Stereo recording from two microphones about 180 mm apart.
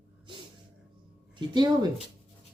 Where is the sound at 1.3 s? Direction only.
25° right (ahead or behind).